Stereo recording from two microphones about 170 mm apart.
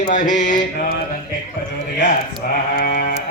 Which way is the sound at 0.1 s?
45° left (ahead or behind).